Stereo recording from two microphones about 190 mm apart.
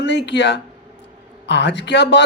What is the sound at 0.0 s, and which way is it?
Speech, 65° left (ahead or behind).